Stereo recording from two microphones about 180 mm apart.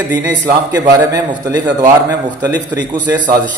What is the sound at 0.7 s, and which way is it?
A man's voice, 20° right (ahead or behind).